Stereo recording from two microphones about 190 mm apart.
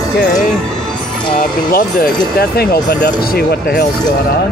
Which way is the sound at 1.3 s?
45° left (ahead or behind).